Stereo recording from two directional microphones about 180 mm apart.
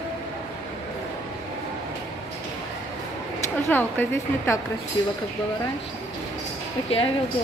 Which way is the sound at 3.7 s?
10° left (ahead or behind).